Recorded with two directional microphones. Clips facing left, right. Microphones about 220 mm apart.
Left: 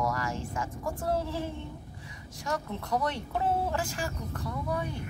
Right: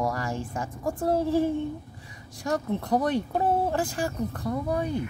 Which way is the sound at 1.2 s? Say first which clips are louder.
Right 9 dB; 50° right (ahead or behind).